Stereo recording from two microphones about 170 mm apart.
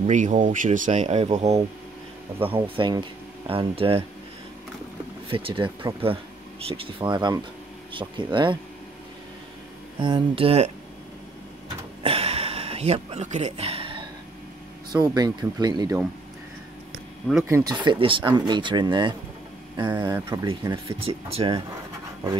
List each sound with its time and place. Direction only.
0.0 s speech: 45° right (ahead or behind)
5.3 s speech: 30° right (ahead or behind)
9.9 s speech: 30° right (ahead or behind)
12.0 s a sound: 35° right (ahead or behind)
14.9 s speech: 25° right (ahead or behind)
17.5 s speech: 15° right (ahead or behind)
17.8 s speech: 30° right (ahead or behind)
20.7 s speech: 35° right (ahead or behind)